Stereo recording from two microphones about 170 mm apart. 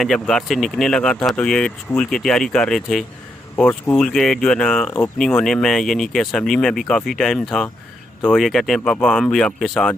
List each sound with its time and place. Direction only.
0.0 s speech: centre (ahead or behind)